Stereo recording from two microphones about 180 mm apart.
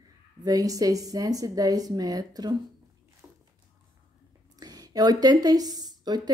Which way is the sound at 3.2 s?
10° right (ahead or behind).